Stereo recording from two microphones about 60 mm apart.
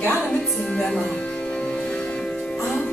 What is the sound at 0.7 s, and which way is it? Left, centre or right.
Music, centre.